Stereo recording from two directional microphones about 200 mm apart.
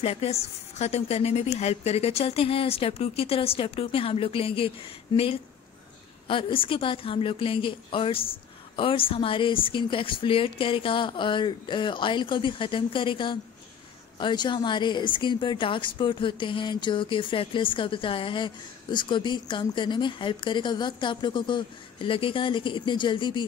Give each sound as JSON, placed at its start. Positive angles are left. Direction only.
{"t": 0.0, "sound": "a woman's voice", "side_deg": 30}